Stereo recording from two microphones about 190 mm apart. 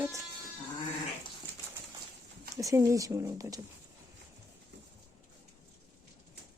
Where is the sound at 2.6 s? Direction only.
15° right (ahead or behind).